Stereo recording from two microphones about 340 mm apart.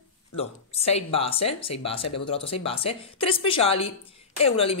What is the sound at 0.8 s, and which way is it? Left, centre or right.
Speech, centre.